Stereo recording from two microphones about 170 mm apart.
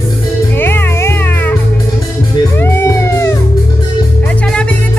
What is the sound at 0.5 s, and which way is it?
Music, 10° left (ahead or behind).